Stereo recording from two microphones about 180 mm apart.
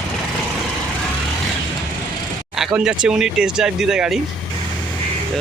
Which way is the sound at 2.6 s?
5° right (ahead or behind).